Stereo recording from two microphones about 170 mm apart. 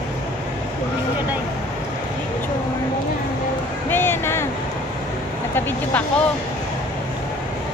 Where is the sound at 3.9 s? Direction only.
15° left (ahead or behind).